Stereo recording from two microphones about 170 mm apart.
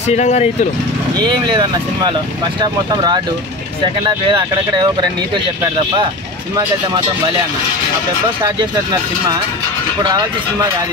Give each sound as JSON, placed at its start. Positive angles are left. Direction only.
{"t": 0.1, "sound": "speech", "side_deg": 40}
{"t": 1.1, "sound": "speech", "side_deg": -25}
{"t": 10.0, "sound": "speech", "side_deg": -25}